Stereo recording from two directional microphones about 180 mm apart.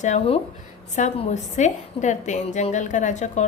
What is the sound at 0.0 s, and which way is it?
A woman's voice, 40° left (ahead or behind).